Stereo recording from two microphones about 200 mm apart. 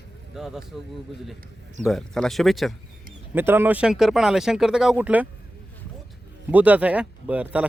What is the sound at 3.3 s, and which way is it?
Speech, 10° right (ahead or behind).